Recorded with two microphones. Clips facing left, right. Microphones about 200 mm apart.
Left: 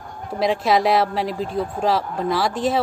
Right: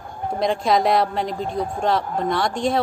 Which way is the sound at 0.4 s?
5° left (ahead or behind).